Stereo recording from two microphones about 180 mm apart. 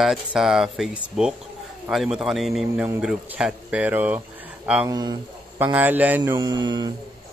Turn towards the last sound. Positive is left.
turn(degrees=-25)  # may be behind; listen again after turning